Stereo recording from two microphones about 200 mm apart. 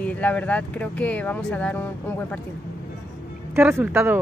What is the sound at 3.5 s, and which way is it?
Speech, 10° right (ahead or behind).